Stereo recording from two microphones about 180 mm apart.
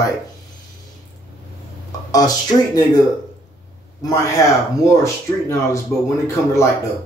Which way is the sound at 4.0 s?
20° left (ahead or behind).